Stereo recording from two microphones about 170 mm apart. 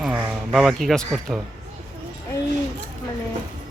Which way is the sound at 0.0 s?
Centre (ahead or behind).